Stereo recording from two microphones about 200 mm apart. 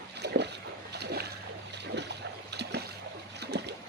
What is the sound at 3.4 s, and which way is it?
Boat, 55° right (ahead or behind).